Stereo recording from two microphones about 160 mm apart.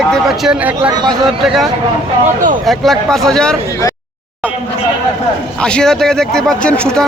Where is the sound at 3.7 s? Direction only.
20° left (ahead or behind).